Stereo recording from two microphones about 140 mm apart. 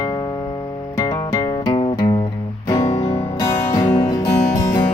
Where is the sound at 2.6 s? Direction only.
20° left (ahead or behind).